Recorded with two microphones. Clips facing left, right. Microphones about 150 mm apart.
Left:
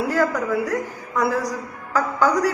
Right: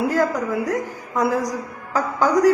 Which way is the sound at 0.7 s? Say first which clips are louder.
Right 1 dB; 15° right (ahead or behind).